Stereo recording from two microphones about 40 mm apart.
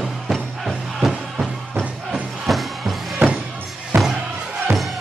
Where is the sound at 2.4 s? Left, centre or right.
Centre.